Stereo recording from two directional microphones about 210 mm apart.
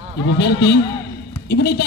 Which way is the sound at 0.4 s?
50° left (ahead or behind).